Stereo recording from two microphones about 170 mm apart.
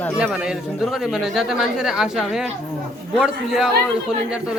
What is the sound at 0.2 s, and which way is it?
A man's voice, 5° right (ahead or behind).